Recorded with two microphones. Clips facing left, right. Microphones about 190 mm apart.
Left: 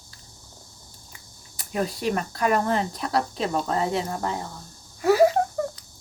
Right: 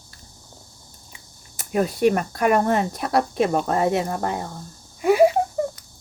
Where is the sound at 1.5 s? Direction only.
45° right (ahead or behind).